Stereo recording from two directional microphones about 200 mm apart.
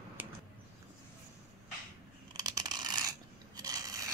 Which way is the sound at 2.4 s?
20° right (ahead or behind).